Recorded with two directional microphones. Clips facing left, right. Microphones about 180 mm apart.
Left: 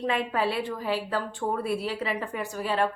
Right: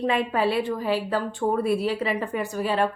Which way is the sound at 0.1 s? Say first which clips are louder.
Right 3 dB; 15° right (ahead or behind).